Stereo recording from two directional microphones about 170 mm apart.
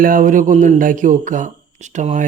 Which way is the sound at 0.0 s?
55° right (ahead or behind).